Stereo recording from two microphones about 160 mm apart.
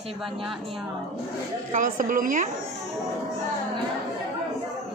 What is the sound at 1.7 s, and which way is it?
Speech, 55° right (ahead or behind).